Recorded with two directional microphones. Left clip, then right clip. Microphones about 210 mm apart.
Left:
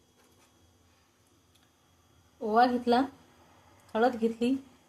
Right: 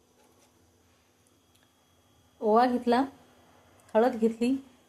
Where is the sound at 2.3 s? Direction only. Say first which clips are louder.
Right 1 dB; 10° right (ahead or behind).